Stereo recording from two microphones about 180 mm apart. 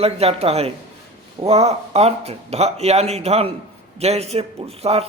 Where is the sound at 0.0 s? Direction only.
35° right (ahead or behind).